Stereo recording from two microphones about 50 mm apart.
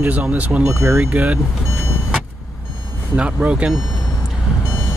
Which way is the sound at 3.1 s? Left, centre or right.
Right.